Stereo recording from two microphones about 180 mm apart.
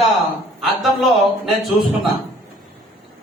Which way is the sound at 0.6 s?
Centre (ahead or behind).